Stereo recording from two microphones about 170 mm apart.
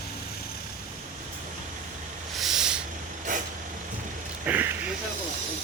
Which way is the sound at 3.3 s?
50° right (ahead or behind).